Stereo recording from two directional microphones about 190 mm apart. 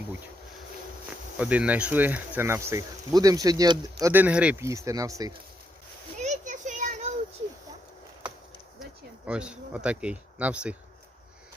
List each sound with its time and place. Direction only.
1.4 s speech: 5° right (ahead or behind)
4.0 s speech: 10° right (ahead or behind)
6.1 s children playing: 40° right (ahead or behind)
8.8 s speech: 5° right (ahead or behind)